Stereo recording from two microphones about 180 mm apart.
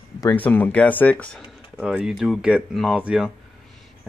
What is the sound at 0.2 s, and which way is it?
Speech, 10° left (ahead or behind).